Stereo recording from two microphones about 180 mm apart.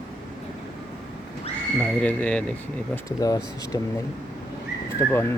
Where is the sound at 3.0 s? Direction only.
20° left (ahead or behind).